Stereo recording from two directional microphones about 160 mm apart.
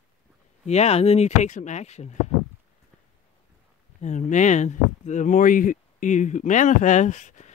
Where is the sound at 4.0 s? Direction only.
50° left (ahead or behind).